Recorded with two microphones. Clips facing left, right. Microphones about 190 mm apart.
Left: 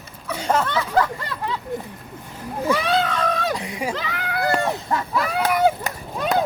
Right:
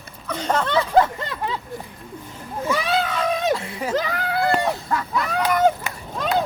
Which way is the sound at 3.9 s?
40° right (ahead or behind).